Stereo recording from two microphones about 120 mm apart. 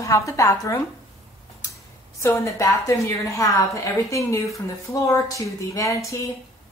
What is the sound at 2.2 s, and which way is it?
A woman's voice, 25° left (ahead or behind).